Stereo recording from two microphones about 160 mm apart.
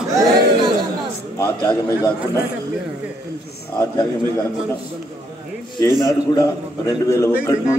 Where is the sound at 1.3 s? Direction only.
20° left (ahead or behind).